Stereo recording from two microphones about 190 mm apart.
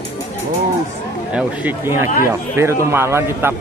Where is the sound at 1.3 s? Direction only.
10° right (ahead or behind).